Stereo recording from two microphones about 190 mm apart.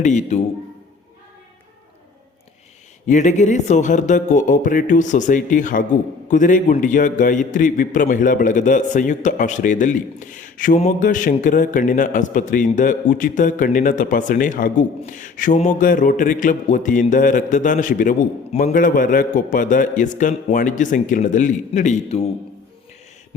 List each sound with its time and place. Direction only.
0.0 s a man's voice: 40° left (ahead or behind)
3.1 s speech: 40° left (ahead or behind)